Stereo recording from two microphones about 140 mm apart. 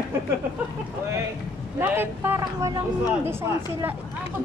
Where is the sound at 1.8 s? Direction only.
15° right (ahead or behind).